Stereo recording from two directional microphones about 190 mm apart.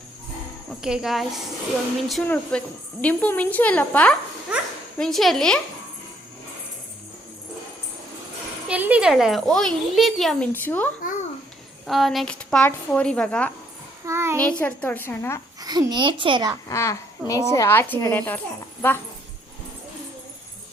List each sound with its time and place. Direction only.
0.8 s a child's voice: 5° right (ahead or behind)
8.6 s a child's voice: 5° right (ahead or behind); by 10.8 s 10° left (ahead or behind)
11.9 s a child's voice: centre (ahead or behind)
14.0 s a child's voice: 15° right (ahead or behind)
14.3 s a woman's voice: 10° left (ahead or behind)
15.6 s a child's voice: 20° right (ahead or behind)
16.6 s a woman's voice: 15° left (ahead or behind)